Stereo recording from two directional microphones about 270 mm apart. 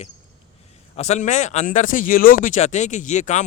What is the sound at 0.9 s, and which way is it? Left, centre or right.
Speech, left.